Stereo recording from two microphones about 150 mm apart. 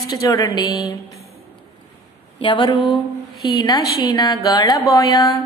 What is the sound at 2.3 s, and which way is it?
A woman's voice, 30° left (ahead or behind).